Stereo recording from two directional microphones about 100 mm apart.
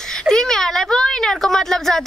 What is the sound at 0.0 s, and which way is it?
Speech, 5° left (ahead or behind).